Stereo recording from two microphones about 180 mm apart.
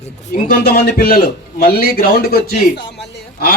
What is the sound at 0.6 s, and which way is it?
A man's voice, 60° left (ahead or behind).